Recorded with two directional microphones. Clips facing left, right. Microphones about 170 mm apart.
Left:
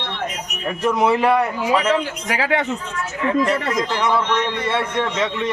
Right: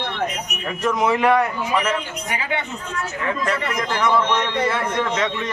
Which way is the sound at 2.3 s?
90° left.